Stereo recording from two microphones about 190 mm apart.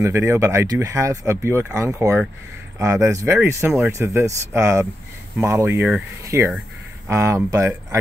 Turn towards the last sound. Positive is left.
turn(degrees=-15)  # may be behind; listen again after turning